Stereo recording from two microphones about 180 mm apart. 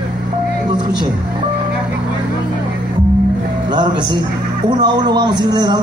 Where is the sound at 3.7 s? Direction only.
25° right (ahead or behind).